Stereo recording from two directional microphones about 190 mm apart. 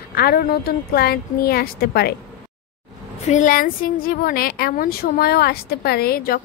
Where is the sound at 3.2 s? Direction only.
40° left (ahead or behind).